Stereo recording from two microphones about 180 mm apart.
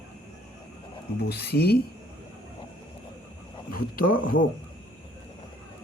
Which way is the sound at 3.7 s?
50° left (ahead or behind).